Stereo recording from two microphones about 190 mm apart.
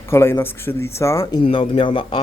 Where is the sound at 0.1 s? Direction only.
10° left (ahead or behind).